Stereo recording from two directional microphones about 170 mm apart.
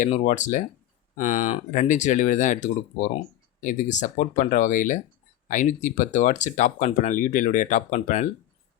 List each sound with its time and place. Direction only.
0.0 s speech: 45° left (ahead or behind)